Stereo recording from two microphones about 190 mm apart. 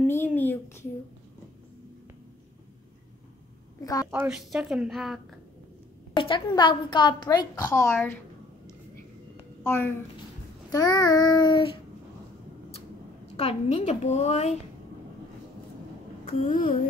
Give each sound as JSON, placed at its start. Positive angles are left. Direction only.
{"t": 0.0, "sound": "a child's voice", "side_deg": 10}
{"t": 3.8, "sound": "a woman's voice", "side_deg": 20}
{"t": 4.1, "sound": "a woman's voice", "side_deg": -5}
{"t": 6.1, "sound": "a woman's voice", "side_deg": 25}
{"t": 9.6, "sound": "a woman's voice", "side_deg": 10}
{"t": 13.4, "sound": "a woman's voice", "side_deg": 35}